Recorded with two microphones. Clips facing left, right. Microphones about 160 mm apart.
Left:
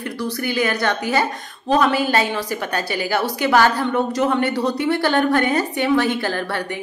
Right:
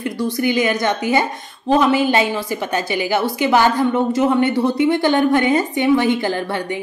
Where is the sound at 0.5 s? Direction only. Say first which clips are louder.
Right 2 dB; 15° right (ahead or behind).